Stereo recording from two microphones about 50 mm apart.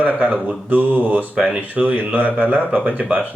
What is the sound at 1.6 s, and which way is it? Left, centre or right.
Speech, right.